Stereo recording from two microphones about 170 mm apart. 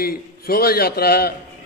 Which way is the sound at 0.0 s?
60° left (ahead or behind).